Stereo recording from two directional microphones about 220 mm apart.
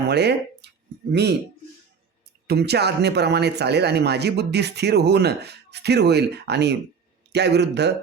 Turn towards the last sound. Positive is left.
turn(degrees=-50)  # may be behind; listen again after turning